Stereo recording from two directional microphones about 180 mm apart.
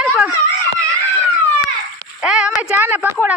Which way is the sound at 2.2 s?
5° right (ahead or behind).